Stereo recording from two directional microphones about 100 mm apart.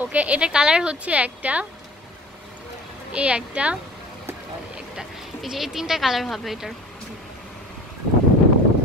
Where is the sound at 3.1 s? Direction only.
10° right (ahead or behind).